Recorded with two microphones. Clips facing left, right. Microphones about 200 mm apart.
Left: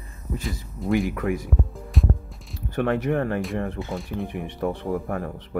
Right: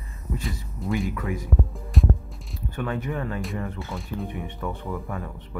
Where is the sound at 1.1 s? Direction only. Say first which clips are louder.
Left 4 dB; 55° left (ahead or behind).